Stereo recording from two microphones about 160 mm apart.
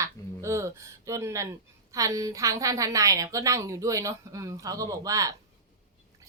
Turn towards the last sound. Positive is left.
turn(degrees=-20)  # may be behind; listen again after turning